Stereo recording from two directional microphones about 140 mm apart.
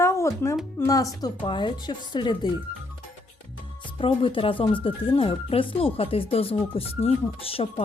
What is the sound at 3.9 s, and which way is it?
Speech, 40° left (ahead or behind).